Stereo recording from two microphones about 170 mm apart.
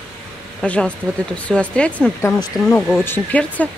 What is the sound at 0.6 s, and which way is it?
Speech, 5° left (ahead or behind).